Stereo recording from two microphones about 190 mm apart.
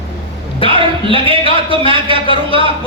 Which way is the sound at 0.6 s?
30° left (ahead or behind).